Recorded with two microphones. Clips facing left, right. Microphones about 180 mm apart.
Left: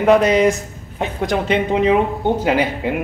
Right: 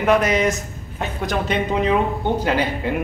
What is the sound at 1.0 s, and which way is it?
A man's voice, 20° left (ahead or behind).